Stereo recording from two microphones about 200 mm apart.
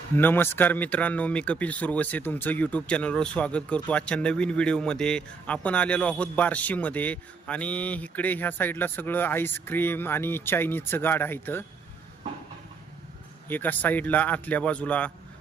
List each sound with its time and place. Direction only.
0.2 s speech: 10° left (ahead or behind)
13.5 s speech: 10° left (ahead or behind)